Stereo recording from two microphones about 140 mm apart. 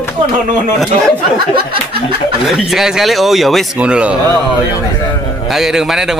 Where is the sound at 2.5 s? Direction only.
Centre (ahead or behind).